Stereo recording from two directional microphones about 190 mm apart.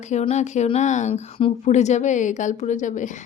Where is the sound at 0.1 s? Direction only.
35° left (ahead or behind).